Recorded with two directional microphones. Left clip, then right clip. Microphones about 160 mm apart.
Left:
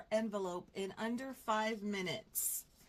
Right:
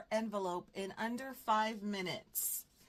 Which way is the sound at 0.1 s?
35° right (ahead or behind).